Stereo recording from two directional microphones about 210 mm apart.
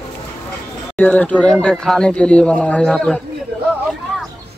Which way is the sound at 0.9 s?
10° left (ahead or behind).